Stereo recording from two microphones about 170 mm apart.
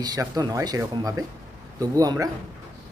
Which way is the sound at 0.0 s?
20° right (ahead or behind).